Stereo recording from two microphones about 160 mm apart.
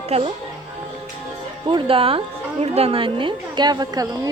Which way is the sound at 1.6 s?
35° right (ahead or behind).